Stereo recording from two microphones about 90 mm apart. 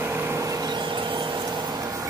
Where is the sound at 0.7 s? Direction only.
60° right (ahead or behind); by 2.1 s 40° right (ahead or behind).